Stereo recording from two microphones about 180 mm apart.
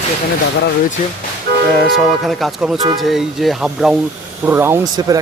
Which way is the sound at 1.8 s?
Centre (ahead or behind).